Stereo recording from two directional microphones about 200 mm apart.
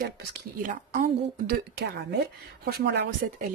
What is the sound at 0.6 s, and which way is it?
Speech, 45° right (ahead or behind).